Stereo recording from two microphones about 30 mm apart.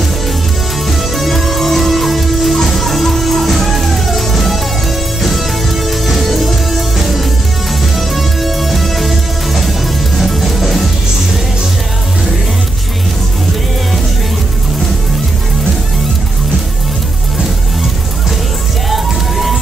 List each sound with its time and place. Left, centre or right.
0.8 s music: centre
5.9 s music: centre
18.9 s music: centre